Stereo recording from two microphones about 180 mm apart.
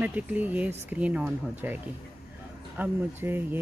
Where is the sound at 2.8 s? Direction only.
10° right (ahead or behind).